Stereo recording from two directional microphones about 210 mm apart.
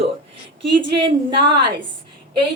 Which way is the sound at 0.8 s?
25° right (ahead or behind).